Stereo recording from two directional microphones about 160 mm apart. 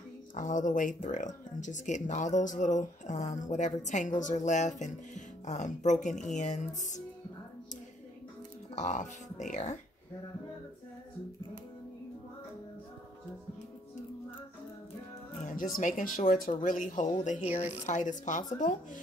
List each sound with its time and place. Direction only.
0.3 s speech: 55° left (ahead or behind)
8.7 s speech: 50° left (ahead or behind)
15.4 s speech: 55° left (ahead or behind)